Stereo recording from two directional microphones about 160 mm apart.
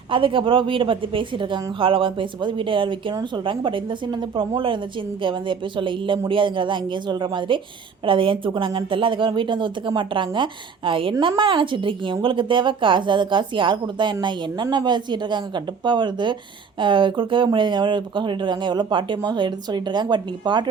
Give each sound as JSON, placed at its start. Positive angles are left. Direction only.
{"t": 0.1, "sound": "speech", "side_deg": -30}